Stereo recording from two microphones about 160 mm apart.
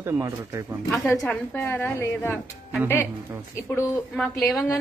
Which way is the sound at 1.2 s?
15° left (ahead or behind).